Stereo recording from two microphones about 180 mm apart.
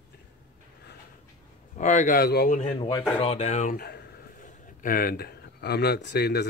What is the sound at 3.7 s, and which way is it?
Speech, 60° left (ahead or behind).